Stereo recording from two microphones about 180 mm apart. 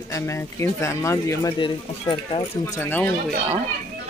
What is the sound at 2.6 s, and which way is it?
Speech, 10° left (ahead or behind).